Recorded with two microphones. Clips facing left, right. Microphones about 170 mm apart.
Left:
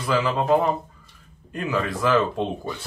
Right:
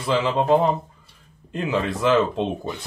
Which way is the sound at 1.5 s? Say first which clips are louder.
Right 2 dB; 25° right (ahead or behind).